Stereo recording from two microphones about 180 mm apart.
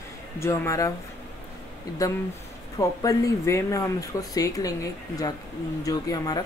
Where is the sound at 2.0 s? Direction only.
20° left (ahead or behind).